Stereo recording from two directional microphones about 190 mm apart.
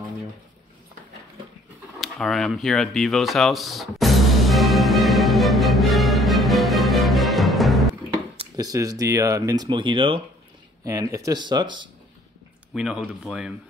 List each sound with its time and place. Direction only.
2.0 s a sound: centre (ahead or behind)
8.4 s speech: 20° right (ahead or behind)
12.7 s speech: 5° right (ahead or behind)